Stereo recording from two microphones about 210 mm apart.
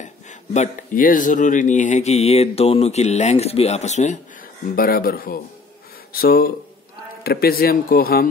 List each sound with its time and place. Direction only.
0.0 s speech: 35° left (ahead or behind)
4.7 s speech: 45° left (ahead or behind)